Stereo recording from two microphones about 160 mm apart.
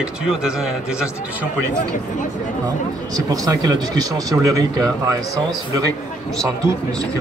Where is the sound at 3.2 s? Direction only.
20° right (ahead or behind).